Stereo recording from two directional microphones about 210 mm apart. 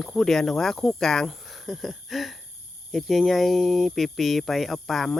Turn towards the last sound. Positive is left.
turn(degrees=0)  # may be behind; listen again after turning